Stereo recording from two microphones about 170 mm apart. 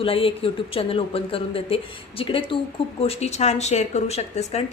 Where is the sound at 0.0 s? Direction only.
30° left (ahead or behind).